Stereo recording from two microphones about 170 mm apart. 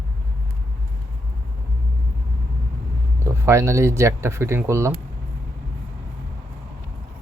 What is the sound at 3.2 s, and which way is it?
Speech, 15° right (ahead or behind).